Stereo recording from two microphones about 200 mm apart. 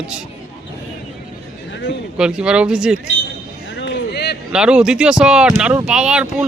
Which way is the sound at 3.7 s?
65° left (ahead or behind).